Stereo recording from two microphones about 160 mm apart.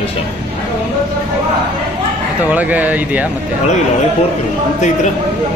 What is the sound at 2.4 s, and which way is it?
Speech, 10° right (ahead or behind).